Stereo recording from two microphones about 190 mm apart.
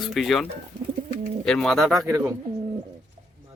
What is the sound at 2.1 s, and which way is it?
Speech, 15° right (ahead or behind).